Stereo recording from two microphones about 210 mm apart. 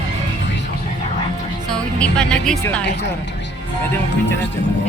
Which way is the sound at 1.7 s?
5° left (ahead or behind).